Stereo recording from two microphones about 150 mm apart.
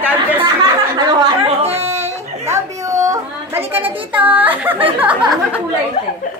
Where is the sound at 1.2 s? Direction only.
40° right (ahead or behind).